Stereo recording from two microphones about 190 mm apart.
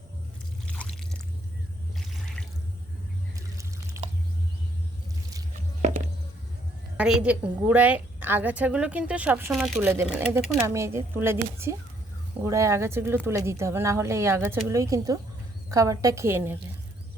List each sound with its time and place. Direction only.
0.7 s pour: 5° left (ahead or behind)
3.3 s a sound: 15° right (ahead or behind)
6.9 s a woman's voice: 5° right (ahead or behind)